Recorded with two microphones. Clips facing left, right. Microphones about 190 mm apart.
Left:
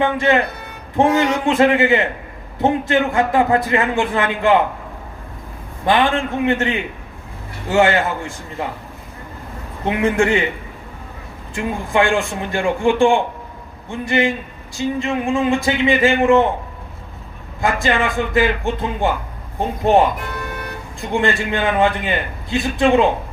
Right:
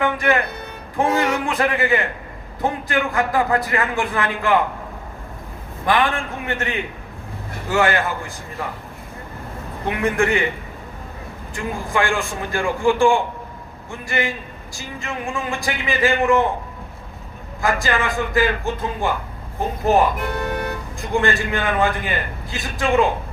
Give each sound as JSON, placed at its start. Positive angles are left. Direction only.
{"t": 0.0, "sound": "a man's voice", "side_deg": 25}
{"t": 5.8, "sound": "a man's voice", "side_deg": 25}
{"t": 9.8, "sound": "a man's voice", "side_deg": 25}
{"t": 11.5, "sound": "a man's voice", "side_deg": 25}
{"t": 17.6, "sound": "a man's voice", "side_deg": 25}
{"t": 20.4, "sound": "music", "side_deg": -30}
{"t": 21.1, "sound": "a man's voice", "side_deg": 25}